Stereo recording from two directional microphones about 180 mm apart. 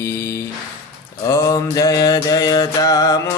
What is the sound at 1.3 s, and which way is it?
Mantra, 15° left (ahead or behind).